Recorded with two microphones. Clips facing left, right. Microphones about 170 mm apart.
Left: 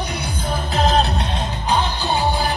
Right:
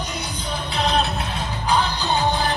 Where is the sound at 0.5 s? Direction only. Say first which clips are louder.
Left 4 dB; 45° left (ahead or behind).